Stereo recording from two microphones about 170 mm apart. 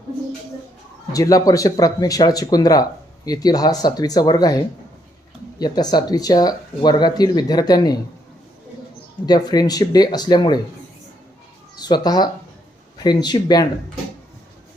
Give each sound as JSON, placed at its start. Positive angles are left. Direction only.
{"t": 1.1, "sound": "speech", "side_deg": 20}
{"t": 9.2, "sound": "speech", "side_deg": 25}
{"t": 11.8, "sound": "speech", "side_deg": 25}